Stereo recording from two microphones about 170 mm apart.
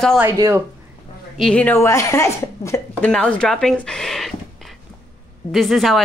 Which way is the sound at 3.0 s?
5° left (ahead or behind).